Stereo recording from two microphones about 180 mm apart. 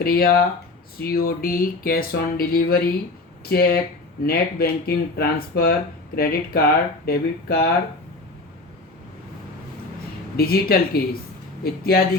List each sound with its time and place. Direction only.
0.0 s speech: 55° left (ahead or behind)
10.3 s speech: 60° left (ahead or behind)